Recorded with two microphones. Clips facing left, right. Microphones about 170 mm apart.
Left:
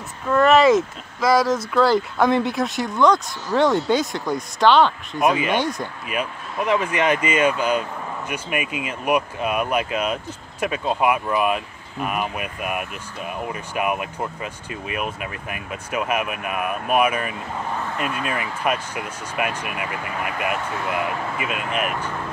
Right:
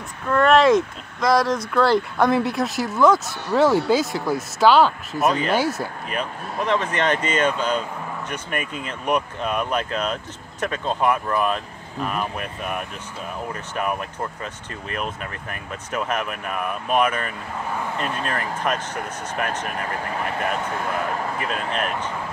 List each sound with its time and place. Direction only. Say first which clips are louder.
0.3 s speech: left 1 dB; 5° left (ahead or behind)
6.0 s speech: left 1 dB; 10° left (ahead or behind)
18.6 s speech: left 1 dB; 10° left (ahead or behind)
21.4 s speech: even; 10° left (ahead or behind)